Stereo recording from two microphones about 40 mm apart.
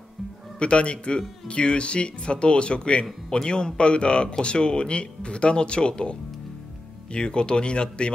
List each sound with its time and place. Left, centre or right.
0.6 s speech: left